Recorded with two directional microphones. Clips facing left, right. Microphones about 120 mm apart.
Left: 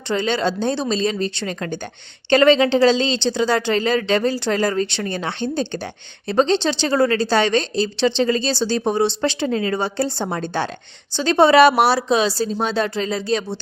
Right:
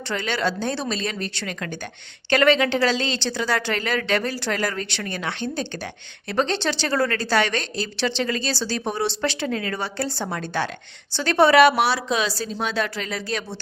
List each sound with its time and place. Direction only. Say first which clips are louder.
0.1 s speech: left 5 dB; 25° left (ahead or behind)